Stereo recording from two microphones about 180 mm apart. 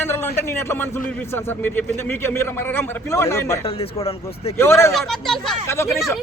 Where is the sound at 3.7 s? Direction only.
30° left (ahead or behind).